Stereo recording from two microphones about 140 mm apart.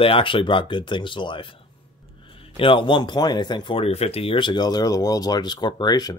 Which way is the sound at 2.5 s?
40° left (ahead or behind).